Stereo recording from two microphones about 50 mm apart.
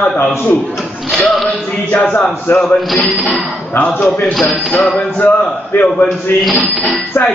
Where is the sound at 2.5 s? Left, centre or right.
Left.